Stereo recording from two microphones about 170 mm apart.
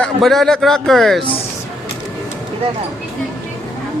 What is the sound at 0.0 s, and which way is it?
A man's voice, centre (ahead or behind).